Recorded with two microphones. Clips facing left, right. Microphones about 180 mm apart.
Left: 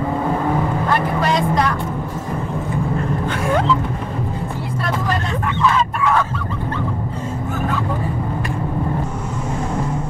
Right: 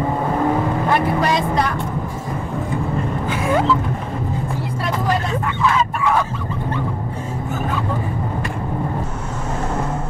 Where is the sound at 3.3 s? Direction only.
Centre (ahead or behind).